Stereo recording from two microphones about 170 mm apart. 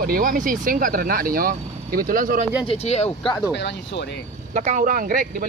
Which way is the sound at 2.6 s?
35° left (ahead or behind).